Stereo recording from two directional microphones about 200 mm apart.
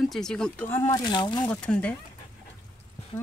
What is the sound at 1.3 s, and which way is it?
Speech, 5° left (ahead or behind).